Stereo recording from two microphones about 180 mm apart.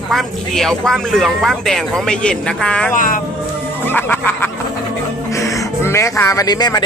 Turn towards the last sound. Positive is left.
turn(degrees=20)  # may be behind; listen again after turning